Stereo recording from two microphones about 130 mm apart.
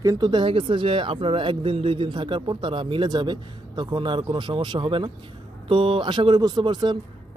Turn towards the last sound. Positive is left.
turn(degrees=-35)  # may be behind; listen again after turning